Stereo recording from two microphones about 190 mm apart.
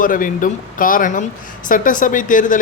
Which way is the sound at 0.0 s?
45° left (ahead or behind).